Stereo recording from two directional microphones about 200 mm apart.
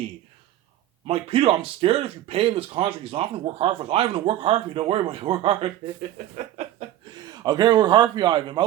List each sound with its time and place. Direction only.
1.0 s speech: 30° right (ahead or behind)
6.4 s a sound: 35° right (ahead or behind)
6.8 s chuckle: 30° right (ahead or behind)
7.3 s speech: 20° right (ahead or behind)